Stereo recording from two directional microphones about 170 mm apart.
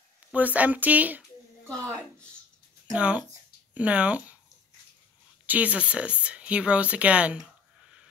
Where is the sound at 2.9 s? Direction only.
5° right (ahead or behind).